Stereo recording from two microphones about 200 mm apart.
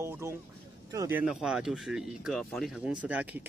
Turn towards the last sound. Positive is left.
turn(degrees=-10)  # may be behind; listen again after turning